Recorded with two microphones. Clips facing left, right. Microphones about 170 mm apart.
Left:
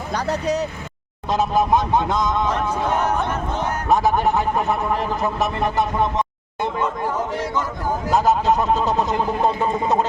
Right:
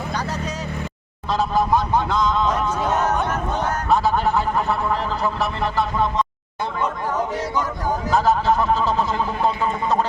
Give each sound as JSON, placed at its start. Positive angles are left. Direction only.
{"t": 0.1, "sound": "vehicle", "side_deg": 70}
{"t": 1.3, "sound": "a man's voice", "side_deg": 20}
{"t": 3.8, "sound": "a man's voice", "side_deg": 20}
{"t": 8.1, "sound": "a man's voice", "side_deg": 20}